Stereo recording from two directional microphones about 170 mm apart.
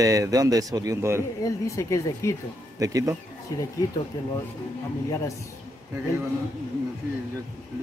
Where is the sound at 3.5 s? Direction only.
20° left (ahead or behind).